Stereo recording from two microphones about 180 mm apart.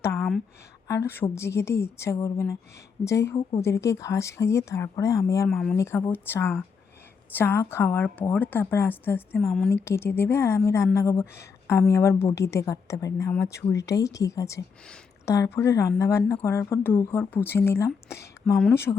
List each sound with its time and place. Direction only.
0.2 s a sound: centre (ahead or behind)
0.9 s speech: 10° left (ahead or behind)
5.5 s speech: centre (ahead or behind)
5.7 s speech: 15° left (ahead or behind)
9.4 s speech: centre (ahead or behind)
9.6 s speech: 15° left (ahead or behind)